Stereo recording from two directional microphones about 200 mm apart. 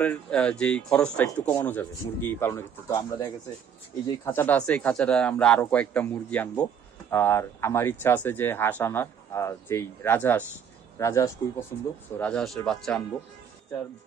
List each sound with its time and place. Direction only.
0.0 s speech: 5° left (ahead or behind)
12.2 s speech: 5° left (ahead or behind)